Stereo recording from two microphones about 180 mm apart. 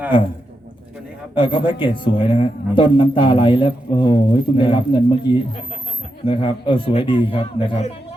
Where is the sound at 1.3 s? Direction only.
25° left (ahead or behind).